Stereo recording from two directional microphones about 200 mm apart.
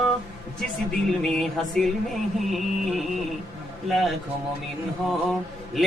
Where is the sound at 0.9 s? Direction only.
5° left (ahead or behind).